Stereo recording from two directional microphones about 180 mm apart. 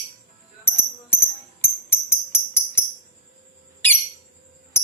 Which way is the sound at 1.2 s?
10° left (ahead or behind).